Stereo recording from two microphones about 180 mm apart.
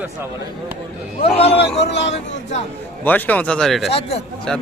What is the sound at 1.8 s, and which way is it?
Speech, 75° left (ahead or behind).